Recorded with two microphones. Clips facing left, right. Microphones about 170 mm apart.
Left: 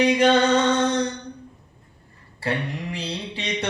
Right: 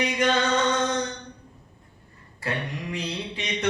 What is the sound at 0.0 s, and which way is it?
Mantra, 30° left (ahead or behind).